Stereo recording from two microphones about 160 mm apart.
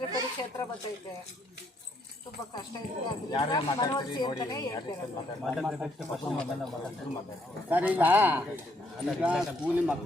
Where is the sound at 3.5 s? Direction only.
25° left (ahead or behind).